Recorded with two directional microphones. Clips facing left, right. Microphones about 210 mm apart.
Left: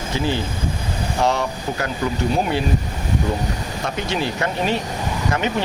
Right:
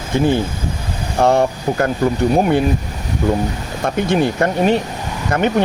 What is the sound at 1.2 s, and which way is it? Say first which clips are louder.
Speech: right 7 dB; 55° right (ahead or behind).